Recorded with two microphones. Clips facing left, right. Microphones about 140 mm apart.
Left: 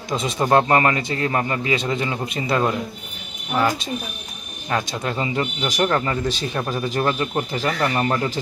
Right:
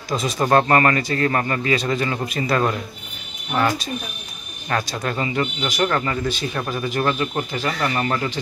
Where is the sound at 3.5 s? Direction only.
5° left (ahead or behind).